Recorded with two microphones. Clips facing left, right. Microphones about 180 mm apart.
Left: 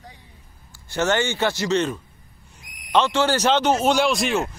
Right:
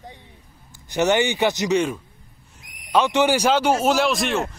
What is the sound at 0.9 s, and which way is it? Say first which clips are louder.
A man's voice: right 3 dB; 15° right (ahead or behind).